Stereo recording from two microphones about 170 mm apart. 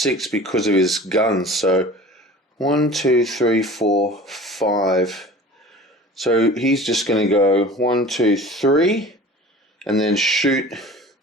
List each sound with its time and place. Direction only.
0.2 s speech: centre (ahead or behind)
3.8 s speech: 85° left
4.1 s speech: centre (ahead or behind)